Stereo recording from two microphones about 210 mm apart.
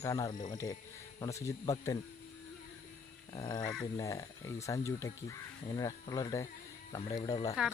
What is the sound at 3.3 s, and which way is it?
Speech, 20° left (ahead or behind).